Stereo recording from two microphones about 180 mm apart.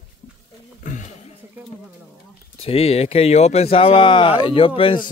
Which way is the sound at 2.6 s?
35° left (ahead or behind).